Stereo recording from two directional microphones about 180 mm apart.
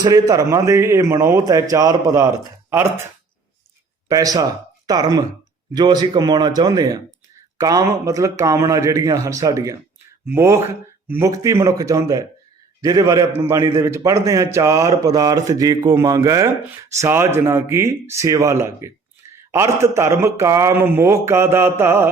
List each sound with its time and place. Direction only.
0.0 s a man's voice: 20° right (ahead or behind)
4.1 s a man's voice: 20° right (ahead or behind)